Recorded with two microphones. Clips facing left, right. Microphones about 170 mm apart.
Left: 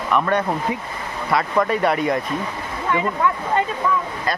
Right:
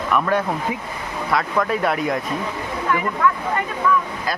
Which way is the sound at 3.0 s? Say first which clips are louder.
Left 1 dB; 25° left (ahead or behind).